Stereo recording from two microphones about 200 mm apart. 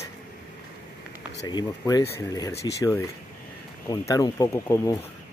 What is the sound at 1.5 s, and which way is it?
Speech, 20° left (ahead or behind).